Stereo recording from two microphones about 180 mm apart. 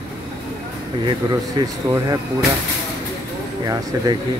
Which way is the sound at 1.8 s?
25° right (ahead or behind).